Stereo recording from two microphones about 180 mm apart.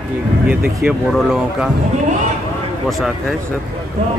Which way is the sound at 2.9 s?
Centre (ahead or behind).